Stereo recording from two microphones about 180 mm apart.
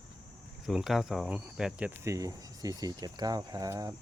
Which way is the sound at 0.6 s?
Centre (ahead or behind).